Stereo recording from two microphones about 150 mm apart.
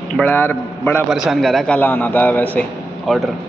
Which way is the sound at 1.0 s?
5° right (ahead or behind).